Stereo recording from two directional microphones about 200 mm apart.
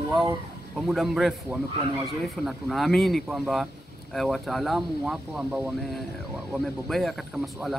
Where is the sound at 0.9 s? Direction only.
Centre (ahead or behind).